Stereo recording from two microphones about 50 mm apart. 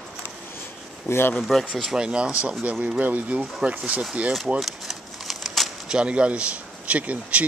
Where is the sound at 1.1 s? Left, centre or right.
Left.